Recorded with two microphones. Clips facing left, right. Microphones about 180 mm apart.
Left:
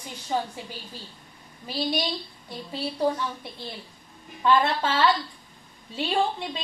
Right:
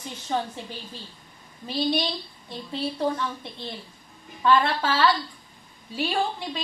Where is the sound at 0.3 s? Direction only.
10° left (ahead or behind).